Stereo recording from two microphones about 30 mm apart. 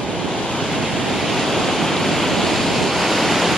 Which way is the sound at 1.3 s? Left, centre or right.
Centre.